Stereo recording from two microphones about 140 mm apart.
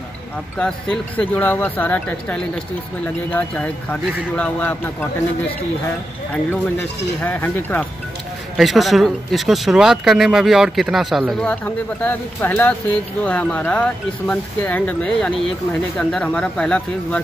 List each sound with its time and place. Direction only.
0.6 s speech: 5° left (ahead or behind)
7.2 s speech: 15° left (ahead or behind)
8.5 s speech: centre (ahead or behind)
11.4 s speech: 10° left (ahead or behind)